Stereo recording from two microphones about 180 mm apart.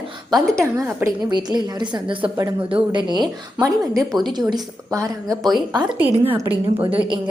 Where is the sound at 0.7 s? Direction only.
15° right (ahead or behind).